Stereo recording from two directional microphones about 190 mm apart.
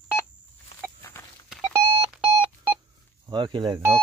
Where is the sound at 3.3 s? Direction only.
25° right (ahead or behind).